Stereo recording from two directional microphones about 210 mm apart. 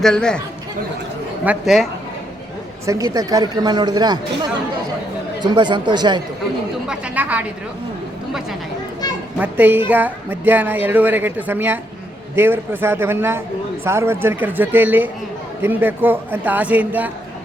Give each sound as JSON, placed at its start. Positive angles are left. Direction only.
{"t": 0.0, "sound": "speech", "side_deg": 5}
{"t": 1.5, "sound": "speech", "side_deg": 0}
{"t": 2.8, "sound": "speech", "side_deg": -15}
{"t": 5.4, "sound": "speech", "side_deg": -20}
{"t": 6.8, "sound": "a woman's voice", "side_deg": -5}
{"t": 9.4, "sound": "a woman's voice", "side_deg": -10}